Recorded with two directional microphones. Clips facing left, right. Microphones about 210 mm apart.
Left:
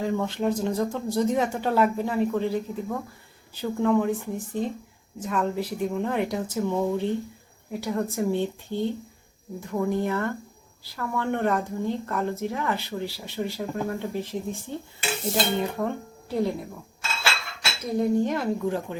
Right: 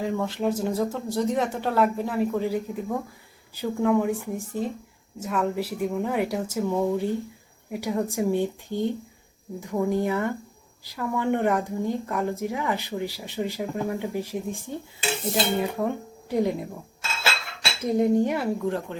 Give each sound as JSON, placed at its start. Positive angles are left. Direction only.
{"t": 0.0, "sound": "a woman's voice", "side_deg": 0}
{"t": 17.8, "sound": "a woman's voice", "side_deg": -20}
{"t": 18.6, "sound": "speech", "side_deg": 0}